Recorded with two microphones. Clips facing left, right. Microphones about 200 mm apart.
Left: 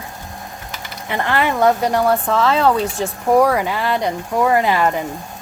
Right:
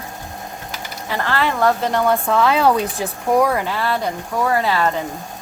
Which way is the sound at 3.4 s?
5° left (ahead or behind).